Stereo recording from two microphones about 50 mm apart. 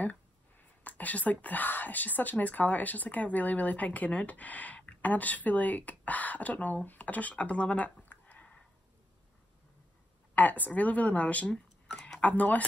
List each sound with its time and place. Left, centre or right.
0.0 s speech: left
10.3 s speech: left
11.4 s a sound: centre
12.2 s speech: left